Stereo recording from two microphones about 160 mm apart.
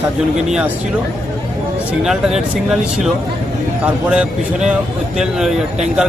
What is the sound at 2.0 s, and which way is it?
Speech, 5° right (ahead or behind).